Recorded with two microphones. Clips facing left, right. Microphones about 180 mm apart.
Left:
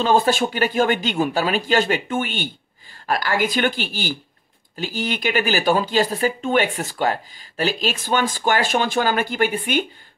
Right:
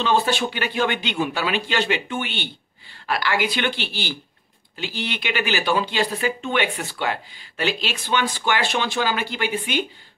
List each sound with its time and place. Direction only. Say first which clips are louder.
0.0 s speech: left 3 dB; 45° left (ahead or behind)